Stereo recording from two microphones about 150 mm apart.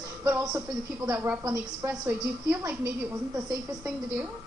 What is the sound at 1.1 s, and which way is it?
Speech, 10° right (ahead or behind).